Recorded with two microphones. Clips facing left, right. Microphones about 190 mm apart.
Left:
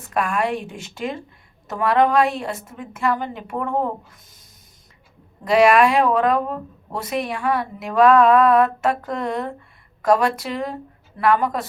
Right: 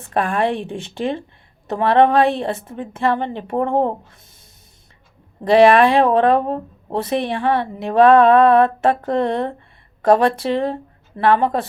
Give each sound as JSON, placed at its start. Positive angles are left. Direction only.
{"t": 0.0, "sound": "a woman's voice", "side_deg": -30}
{"t": 5.5, "sound": "a woman's voice", "side_deg": -30}